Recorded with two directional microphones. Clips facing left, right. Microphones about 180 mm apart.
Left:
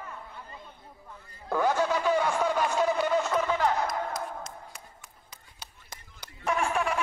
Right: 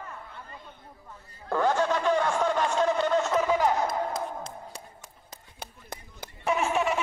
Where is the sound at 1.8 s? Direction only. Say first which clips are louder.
Right 1 dB; 5° left (ahead or behind).